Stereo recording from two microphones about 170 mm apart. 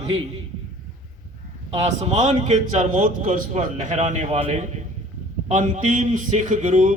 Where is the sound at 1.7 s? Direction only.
40° right (ahead or behind).